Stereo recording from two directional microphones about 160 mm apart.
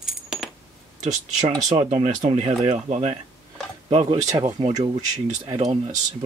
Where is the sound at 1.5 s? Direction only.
25° right (ahead or behind).